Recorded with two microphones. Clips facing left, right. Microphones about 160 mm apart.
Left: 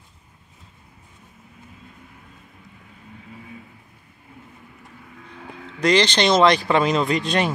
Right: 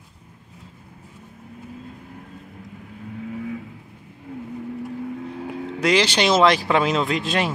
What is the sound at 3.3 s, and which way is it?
Vehicle, 75° right (ahead or behind).